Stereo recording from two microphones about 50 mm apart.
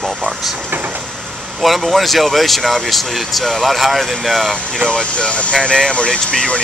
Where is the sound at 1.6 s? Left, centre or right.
Centre.